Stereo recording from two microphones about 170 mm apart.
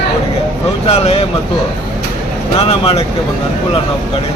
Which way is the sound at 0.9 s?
35° left (ahead or behind).